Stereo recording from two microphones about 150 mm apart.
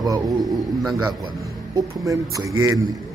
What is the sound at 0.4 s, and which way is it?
Speech, centre (ahead or behind).